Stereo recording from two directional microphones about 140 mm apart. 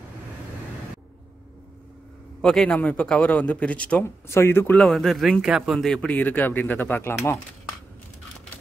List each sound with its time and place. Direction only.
2.4 s speech: 5° left (ahead or behind)
4.8 s speech: centre (ahead or behind); by 7.2 s 15° left (ahead or behind)